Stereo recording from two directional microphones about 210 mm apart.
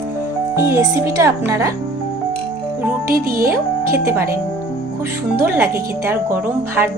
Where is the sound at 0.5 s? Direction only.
15° right (ahead or behind).